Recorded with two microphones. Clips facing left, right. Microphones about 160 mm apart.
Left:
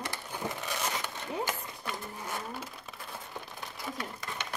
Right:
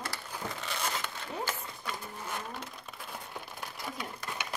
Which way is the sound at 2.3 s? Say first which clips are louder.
Left 1 dB; 5° left (ahead or behind).